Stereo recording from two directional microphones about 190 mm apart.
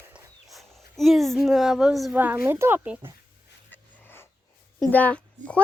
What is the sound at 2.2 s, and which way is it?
Speech, 10° right (ahead or behind).